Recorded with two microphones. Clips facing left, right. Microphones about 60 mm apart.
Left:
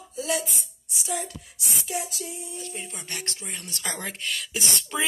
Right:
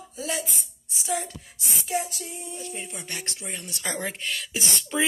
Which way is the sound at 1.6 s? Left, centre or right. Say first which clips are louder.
Right 3 dB; right.